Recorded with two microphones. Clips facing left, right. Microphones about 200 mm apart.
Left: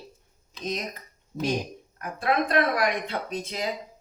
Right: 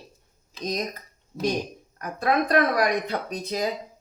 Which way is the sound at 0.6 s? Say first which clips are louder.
Right 3 dB; 40° right (ahead or behind).